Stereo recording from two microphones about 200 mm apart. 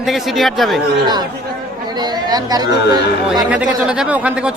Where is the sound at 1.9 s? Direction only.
20° right (ahead or behind).